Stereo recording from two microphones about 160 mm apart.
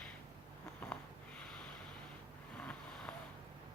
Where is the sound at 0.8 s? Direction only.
10° left (ahead or behind).